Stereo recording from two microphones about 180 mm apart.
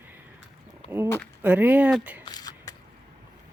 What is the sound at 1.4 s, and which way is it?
Speech, 10° right (ahead or behind).